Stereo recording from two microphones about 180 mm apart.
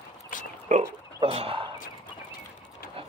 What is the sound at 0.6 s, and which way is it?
Speech, 35° right (ahead or behind).